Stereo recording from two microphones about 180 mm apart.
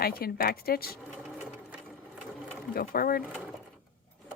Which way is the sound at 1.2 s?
5° right (ahead or behind).